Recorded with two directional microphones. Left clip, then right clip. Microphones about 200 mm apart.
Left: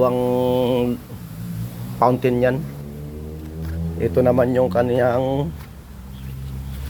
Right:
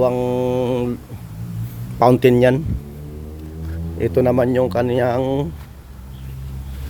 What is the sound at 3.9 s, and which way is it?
Speech, 30° right (ahead or behind).